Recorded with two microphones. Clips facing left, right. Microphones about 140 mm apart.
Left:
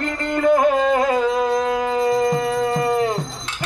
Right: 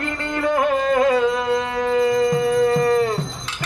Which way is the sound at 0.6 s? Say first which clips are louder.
Left 1 dB; centre (ahead or behind).